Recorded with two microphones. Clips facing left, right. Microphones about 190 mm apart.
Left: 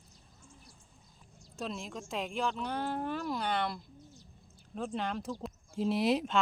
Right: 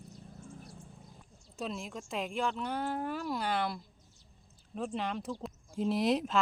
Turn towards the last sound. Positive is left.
turn(degrees=0)  # may be behind; listen again after turning